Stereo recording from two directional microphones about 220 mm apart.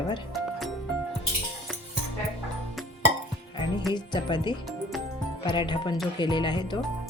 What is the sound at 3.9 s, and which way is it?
Speech, 20° left (ahead or behind).